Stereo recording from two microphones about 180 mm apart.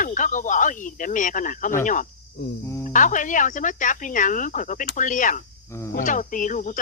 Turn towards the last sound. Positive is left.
turn(degrees=45)  # may be behind; listen again after turning